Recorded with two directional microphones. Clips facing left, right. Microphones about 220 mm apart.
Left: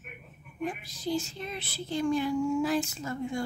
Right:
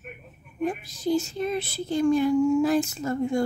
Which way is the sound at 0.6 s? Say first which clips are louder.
Right 7 dB; 45° right (ahead or behind).